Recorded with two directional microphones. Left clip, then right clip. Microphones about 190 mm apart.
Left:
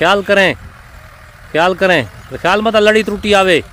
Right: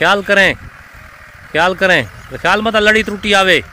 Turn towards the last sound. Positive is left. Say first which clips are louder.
# even
turn(degrees=20)  # may be behind; listen again after turning